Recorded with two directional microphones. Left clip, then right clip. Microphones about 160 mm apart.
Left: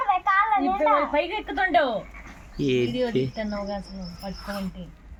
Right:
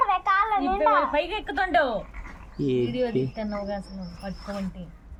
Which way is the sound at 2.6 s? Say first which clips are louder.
Left 2 dB; 20° right (ahead or behind).